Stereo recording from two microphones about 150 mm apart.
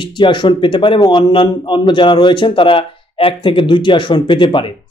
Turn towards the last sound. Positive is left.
turn(degrees=35)  # may be behind; listen again after turning